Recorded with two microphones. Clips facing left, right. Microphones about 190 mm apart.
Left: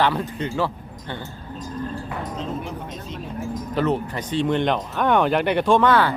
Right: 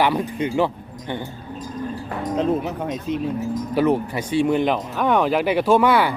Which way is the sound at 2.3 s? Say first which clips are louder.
Right 12 dB; 60° right (ahead or behind).